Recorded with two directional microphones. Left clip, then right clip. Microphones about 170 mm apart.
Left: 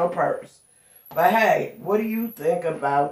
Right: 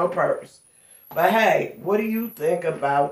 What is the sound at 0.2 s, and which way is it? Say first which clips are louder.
Speech: right 3 dB; 45° right (ahead or behind).